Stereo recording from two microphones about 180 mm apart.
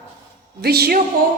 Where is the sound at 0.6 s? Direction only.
60° right (ahead or behind).